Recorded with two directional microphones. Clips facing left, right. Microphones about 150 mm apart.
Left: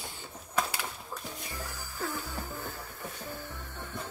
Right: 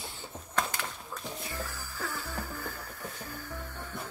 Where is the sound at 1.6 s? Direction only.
15° left (ahead or behind).